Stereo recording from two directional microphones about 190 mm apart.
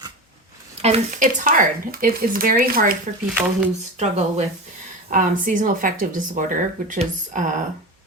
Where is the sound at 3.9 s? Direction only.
35° right (ahead or behind).